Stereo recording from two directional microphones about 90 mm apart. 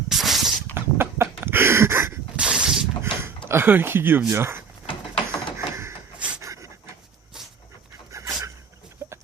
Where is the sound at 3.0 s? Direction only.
30° right (ahead or behind).